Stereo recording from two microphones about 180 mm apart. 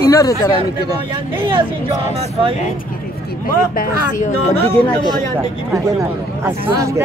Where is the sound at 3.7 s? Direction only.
50° left (ahead or behind).